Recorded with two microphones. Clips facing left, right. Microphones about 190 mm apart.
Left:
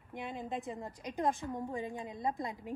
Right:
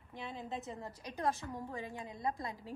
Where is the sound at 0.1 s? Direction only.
20° left (ahead or behind).